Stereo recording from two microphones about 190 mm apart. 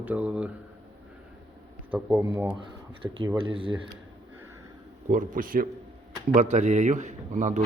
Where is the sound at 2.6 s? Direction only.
25° right (ahead or behind).